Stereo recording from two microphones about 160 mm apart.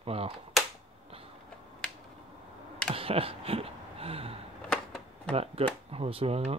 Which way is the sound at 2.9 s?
35° right (ahead or behind).